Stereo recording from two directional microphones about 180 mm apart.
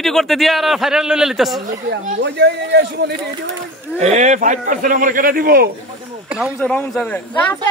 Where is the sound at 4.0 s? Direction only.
40° right (ahead or behind); by 5.7 s 55° right (ahead or behind).